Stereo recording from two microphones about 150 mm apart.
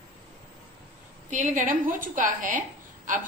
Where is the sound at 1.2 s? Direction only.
55° right (ahead or behind).